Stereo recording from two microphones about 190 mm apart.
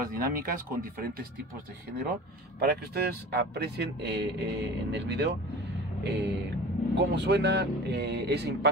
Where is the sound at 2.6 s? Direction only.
55° right (ahead or behind).